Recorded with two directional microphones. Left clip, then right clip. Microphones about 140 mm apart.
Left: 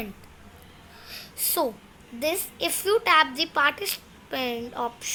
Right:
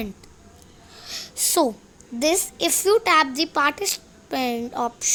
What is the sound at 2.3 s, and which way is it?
A woman's voice, 90° right.